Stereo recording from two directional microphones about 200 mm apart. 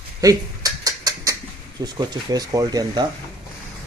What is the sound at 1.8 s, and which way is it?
Speech, 20° right (ahead or behind).